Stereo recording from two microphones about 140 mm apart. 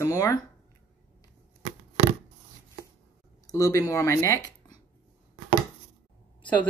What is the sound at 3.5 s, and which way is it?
Speech, 25° left (ahead or behind).